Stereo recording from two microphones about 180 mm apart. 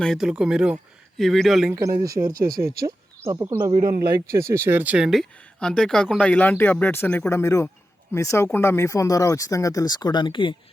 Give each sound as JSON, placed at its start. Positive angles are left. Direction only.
{"t": 0.0, "sound": "speech", "side_deg": 0}
{"t": 1.7, "sound": "speech", "side_deg": -20}
{"t": 3.8, "sound": "speech", "side_deg": -55}
{"t": 4.3, "sound": "speech", "side_deg": -15}